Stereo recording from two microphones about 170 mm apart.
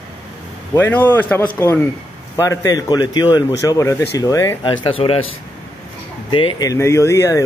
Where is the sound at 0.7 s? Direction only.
10° left (ahead or behind).